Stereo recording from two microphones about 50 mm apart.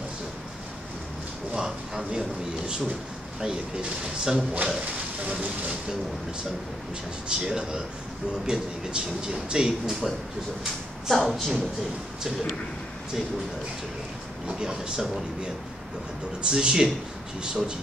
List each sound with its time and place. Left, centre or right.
1.5 s a sound: centre
3.3 s speech: centre
4.7 s speech: right
7.2 s speech: centre
11.1 s speech: centre
14.6 s speech: centre